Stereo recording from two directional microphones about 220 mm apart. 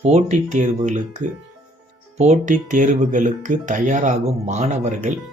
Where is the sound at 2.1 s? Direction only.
30° right (ahead or behind).